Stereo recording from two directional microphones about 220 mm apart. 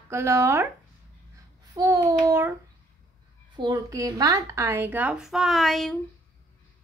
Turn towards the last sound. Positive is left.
turn(degrees=0)  # may be behind; listen again after turning